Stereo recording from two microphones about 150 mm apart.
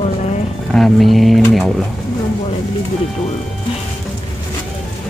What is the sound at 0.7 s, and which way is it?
Speech, centre (ahead or behind).